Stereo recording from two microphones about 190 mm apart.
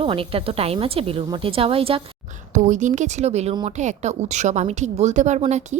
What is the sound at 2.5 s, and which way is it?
Speech, 40° right (ahead or behind).